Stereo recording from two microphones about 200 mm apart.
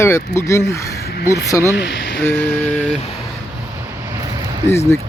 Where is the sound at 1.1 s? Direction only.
50° left (ahead or behind).